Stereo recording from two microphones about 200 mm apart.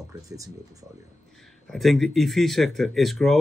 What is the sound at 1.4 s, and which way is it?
Speech, centre (ahead or behind).